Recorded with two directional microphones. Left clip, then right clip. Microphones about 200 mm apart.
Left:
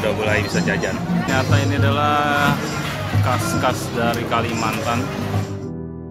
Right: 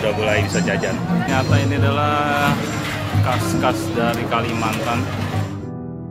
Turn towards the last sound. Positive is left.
turn(degrees=0)  # may be behind; listen again after turning